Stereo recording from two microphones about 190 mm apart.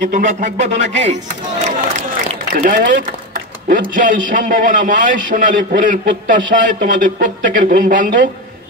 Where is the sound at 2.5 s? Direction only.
45° right (ahead or behind).